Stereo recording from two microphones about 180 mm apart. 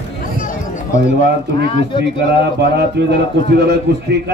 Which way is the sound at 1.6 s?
30° left (ahead or behind).